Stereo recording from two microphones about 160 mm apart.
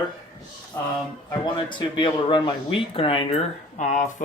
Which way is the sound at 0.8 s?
15° left (ahead or behind).